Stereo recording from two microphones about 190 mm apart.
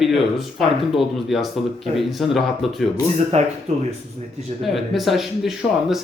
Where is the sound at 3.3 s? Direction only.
35° right (ahead or behind).